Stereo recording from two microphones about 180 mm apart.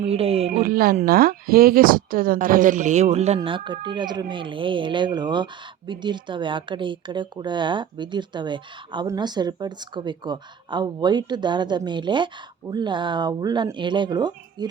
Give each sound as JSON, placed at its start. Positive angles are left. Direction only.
{"t": 0.1, "sound": "speech", "side_deg": -35}
{"t": 0.6, "sound": "a woman's voice", "side_deg": -55}